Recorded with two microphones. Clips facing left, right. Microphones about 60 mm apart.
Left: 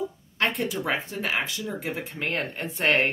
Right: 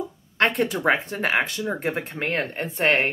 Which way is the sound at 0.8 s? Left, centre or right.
Right.